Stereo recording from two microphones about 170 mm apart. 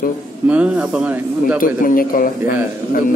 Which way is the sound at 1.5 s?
55° left (ahead or behind).